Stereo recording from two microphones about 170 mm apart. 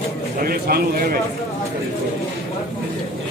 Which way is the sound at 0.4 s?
60° right (ahead or behind).